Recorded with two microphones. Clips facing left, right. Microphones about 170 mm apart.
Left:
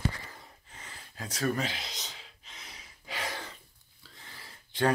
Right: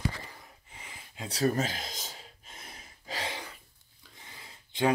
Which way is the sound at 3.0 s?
35° right (ahead or behind).